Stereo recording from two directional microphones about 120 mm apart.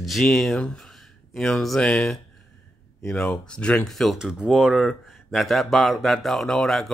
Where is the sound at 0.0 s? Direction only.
Centre (ahead or behind).